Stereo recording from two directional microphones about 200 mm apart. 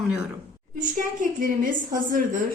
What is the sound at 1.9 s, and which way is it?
Speech, 40° right (ahead or behind).